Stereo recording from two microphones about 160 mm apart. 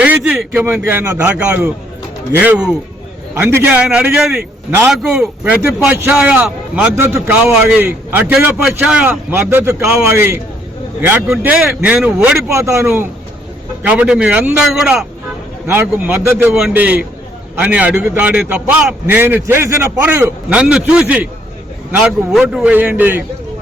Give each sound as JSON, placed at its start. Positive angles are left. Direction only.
{"t": 0.0, "sound": "a man's voice", "side_deg": -10}
{"t": 15.6, "sound": "speech", "side_deg": -15}